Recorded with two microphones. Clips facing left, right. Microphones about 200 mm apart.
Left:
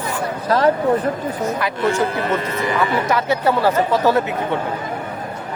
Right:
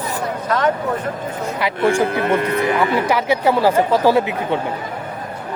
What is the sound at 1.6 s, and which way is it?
Speech, 15° right (ahead or behind).